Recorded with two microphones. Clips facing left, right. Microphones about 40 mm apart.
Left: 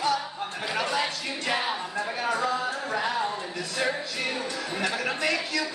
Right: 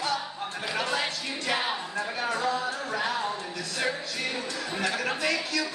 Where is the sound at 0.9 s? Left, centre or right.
Centre.